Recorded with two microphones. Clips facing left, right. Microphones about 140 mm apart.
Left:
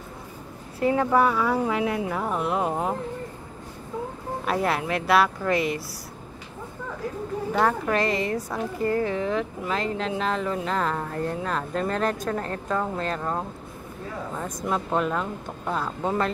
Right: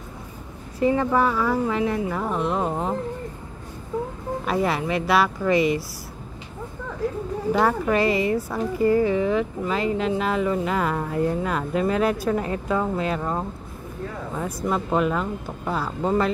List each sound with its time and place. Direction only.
0.7 s speech: 5° left (ahead or behind)
4.5 s speech: centre (ahead or behind)
7.5 s speech: 5° right (ahead or behind)